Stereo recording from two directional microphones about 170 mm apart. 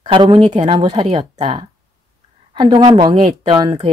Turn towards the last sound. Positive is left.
turn(degrees=-30)  # may be behind; listen again after turning